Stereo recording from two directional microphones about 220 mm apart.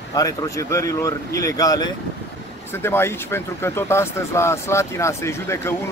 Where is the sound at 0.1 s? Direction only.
15° left (ahead or behind).